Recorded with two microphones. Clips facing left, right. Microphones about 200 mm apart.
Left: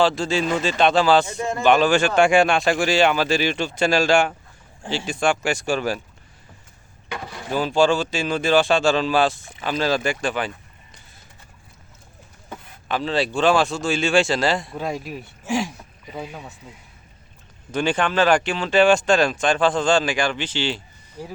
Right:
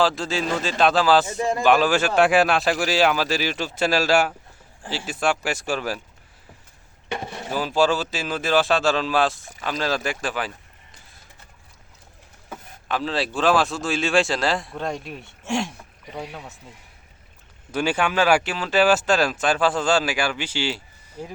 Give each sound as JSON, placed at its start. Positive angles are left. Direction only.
{"t": 0.0, "sound": "speech", "side_deg": 0}
{"t": 7.1, "sound": "speech", "side_deg": -25}
{"t": 7.5, "sound": "speech", "side_deg": -5}
{"t": 12.5, "sound": "speech", "side_deg": 0}
{"t": 17.7, "sound": "speech", "side_deg": -5}